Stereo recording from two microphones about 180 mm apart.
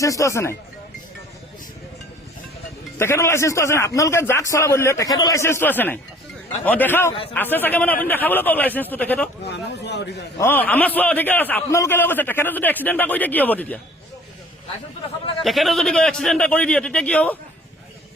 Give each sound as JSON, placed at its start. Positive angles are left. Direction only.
{"t": 0.0, "sound": "a man's voice", "side_deg": 20}
{"t": 3.0, "sound": "a man's voice", "side_deg": 15}
{"t": 9.5, "sound": "a man's voice", "side_deg": 70}
{"t": 10.3, "sound": "a man's voice", "side_deg": 10}
{"t": 15.4, "sound": "a man's voice", "side_deg": 0}